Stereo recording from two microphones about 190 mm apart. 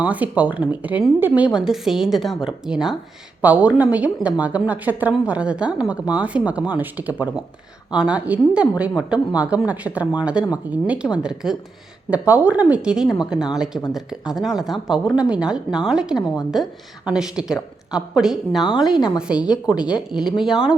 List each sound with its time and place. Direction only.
0.0 s a woman's voice: 10° right (ahead or behind)
19.7 s speech: 20° left (ahead or behind)
20.1 s speech: 5° right (ahead or behind)